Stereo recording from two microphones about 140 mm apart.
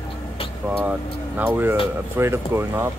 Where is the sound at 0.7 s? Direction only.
10° right (ahead or behind).